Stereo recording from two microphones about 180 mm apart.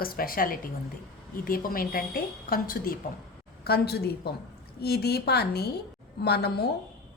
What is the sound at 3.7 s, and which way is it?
A woman's voice, 65° left (ahead or behind).